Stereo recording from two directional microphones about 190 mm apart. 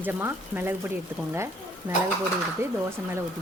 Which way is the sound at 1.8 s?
10° right (ahead or behind).